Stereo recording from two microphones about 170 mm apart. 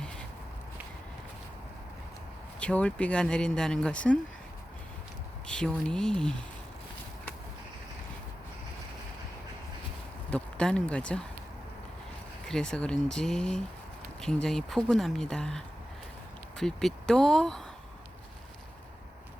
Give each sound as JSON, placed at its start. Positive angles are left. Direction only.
{"t": 2.6, "sound": "speech", "side_deg": 5}
{"t": 5.5, "sound": "speech", "side_deg": 5}
{"t": 10.2, "sound": "speech", "side_deg": 5}
{"t": 12.5, "sound": "speech", "side_deg": 5}